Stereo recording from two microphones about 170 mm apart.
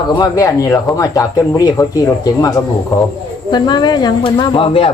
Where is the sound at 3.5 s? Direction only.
25° left (ahead or behind).